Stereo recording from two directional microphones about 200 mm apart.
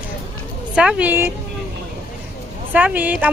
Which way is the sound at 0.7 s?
5° right (ahead or behind).